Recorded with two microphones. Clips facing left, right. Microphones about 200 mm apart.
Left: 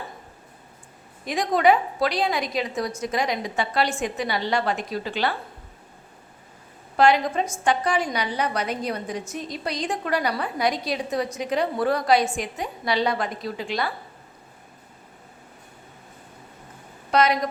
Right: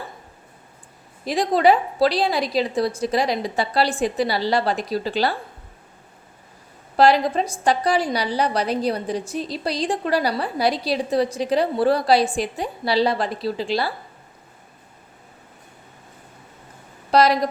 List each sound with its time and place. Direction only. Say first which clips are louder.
1.2 s a woman's voice: right 3 dB; 35° right (ahead or behind)
6.9 s a woman's voice: right 3 dB; 35° right (ahead or behind)
17.1 s a woman's voice: right 4 dB; 35° right (ahead or behind)